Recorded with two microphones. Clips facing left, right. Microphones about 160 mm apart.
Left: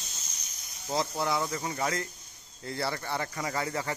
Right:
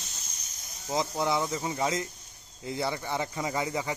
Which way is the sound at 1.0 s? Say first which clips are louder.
Right 2 dB; 20° right (ahead or behind).